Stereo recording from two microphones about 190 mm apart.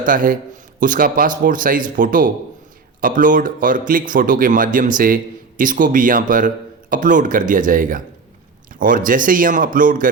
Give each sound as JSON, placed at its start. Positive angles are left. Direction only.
{"t": 0.0, "sound": "speech", "side_deg": -45}